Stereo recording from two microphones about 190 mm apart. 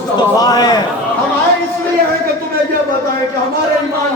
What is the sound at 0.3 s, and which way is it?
Speech, 20° left (ahead or behind).